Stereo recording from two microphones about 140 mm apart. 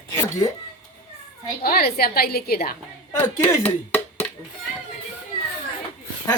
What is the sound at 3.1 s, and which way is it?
Speech, 10° left (ahead or behind).